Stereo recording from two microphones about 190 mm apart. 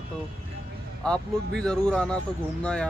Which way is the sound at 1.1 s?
5° left (ahead or behind).